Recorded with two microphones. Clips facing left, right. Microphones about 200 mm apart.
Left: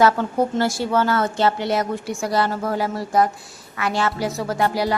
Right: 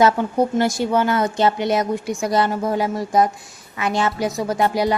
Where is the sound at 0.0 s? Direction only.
15° right (ahead or behind).